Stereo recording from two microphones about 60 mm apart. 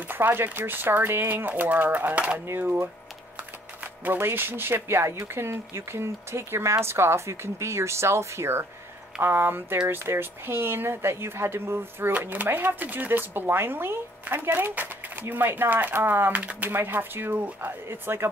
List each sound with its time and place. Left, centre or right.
0.1 s speech: right
4.0 s speech: right
16.3 s speech: right